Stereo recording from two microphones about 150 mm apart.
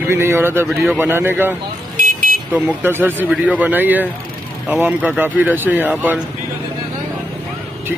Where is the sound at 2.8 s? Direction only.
15° right (ahead or behind).